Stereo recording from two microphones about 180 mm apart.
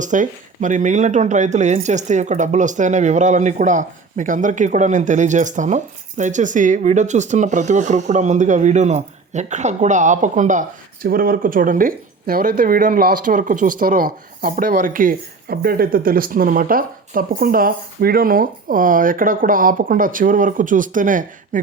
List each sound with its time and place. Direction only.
0.0 s speech: 45° right (ahead or behind)